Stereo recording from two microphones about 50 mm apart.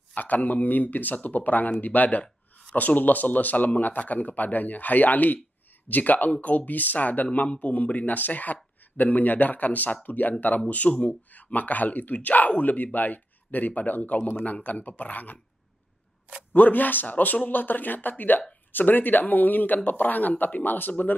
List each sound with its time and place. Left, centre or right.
0.1 s speech: left
16.5 s speech: left